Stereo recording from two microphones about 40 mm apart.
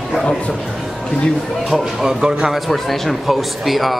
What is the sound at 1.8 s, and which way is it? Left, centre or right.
Speech, centre.